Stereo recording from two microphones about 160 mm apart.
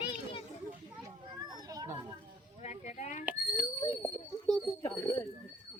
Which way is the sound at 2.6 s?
50° left (ahead or behind).